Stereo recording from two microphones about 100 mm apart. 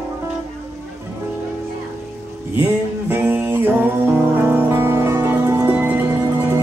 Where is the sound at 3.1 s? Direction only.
20° right (ahead or behind).